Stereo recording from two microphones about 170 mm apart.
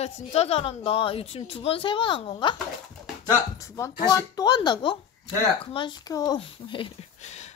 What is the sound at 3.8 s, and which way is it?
A woman's voice, 20° left (ahead or behind).